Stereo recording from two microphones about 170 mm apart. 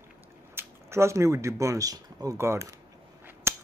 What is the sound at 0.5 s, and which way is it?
Speech, 15° right (ahead or behind).